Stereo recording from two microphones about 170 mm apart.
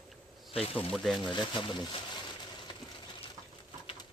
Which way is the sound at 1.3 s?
30° left (ahead or behind).